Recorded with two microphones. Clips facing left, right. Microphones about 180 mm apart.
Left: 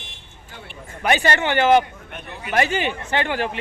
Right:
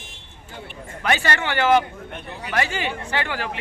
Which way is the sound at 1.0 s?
15° left (ahead or behind).